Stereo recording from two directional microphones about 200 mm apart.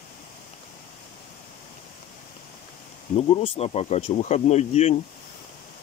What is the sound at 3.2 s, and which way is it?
Speech, 30° left (ahead or behind).